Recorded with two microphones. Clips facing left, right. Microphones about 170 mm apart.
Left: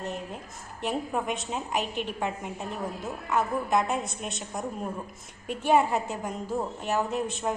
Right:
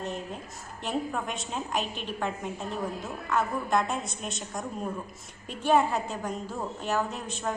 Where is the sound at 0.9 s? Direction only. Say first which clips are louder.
Left 2 dB; 5° left (ahead or behind).